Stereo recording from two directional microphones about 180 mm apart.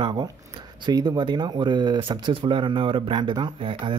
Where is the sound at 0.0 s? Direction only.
25° right (ahead or behind).